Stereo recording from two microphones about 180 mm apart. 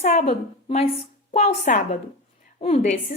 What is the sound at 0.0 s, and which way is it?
A woman's voice, 35° left (ahead or behind).